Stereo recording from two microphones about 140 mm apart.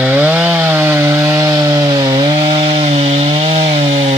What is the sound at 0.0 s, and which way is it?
Wood, 10° right (ahead or behind).